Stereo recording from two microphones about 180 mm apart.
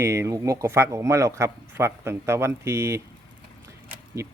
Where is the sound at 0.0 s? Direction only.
15° right (ahead or behind).